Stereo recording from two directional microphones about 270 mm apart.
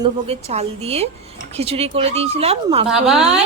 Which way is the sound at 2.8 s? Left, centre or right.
Centre.